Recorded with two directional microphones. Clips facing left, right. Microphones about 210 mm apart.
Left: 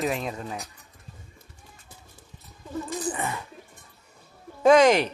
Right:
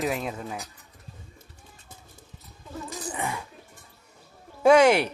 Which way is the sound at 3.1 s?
10° right (ahead or behind).